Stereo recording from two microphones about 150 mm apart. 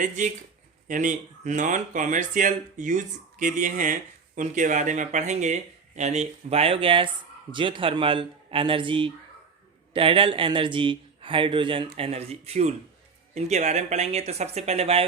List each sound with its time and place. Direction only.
0.9 s a man's voice: 60° right (ahead or behind); by 15.0 s 40° right (ahead or behind)